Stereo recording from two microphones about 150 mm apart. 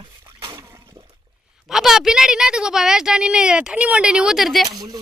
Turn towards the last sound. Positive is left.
turn(degrees=-25)  # may be behind; listen again after turning